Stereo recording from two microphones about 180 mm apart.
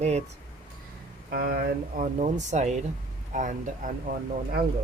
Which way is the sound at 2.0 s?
40° right (ahead or behind).